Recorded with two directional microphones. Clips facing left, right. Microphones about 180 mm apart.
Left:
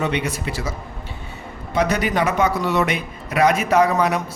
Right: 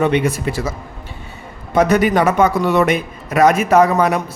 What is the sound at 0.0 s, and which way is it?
Speech, 50° right (ahead or behind).